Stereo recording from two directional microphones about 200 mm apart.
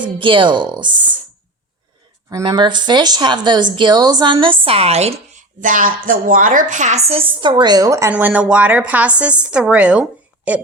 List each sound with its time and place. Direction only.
0.0 s speech: 25° right (ahead or behind)
2.3 s speech: 20° right (ahead or behind)